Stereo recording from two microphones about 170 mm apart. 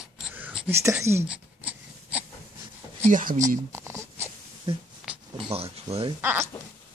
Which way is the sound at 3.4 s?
15° right (ahead or behind).